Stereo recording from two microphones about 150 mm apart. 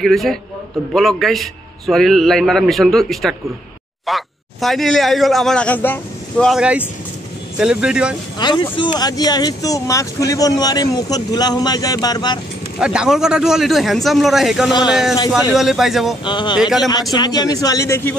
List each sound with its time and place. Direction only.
0.0 s a man's voice: centre (ahead or behind)
7.5 s a man's voice: 5° right (ahead or behind)
8.4 s speech: 30° left (ahead or behind)
12.7 s a man's voice: 5° right (ahead or behind)
16.3 s speech: 30° left (ahead or behind)
16.5 s a man's voice: 5° right (ahead or behind)
17.1 s speech: 25° left (ahead or behind)